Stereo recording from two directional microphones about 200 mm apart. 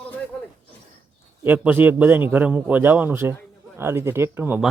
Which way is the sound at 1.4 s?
10° right (ahead or behind).